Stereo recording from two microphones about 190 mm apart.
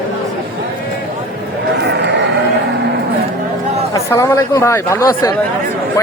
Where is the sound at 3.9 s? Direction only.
15° left (ahead or behind).